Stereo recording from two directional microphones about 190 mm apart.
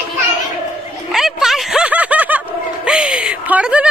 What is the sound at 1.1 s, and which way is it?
Snicker, centre (ahead or behind).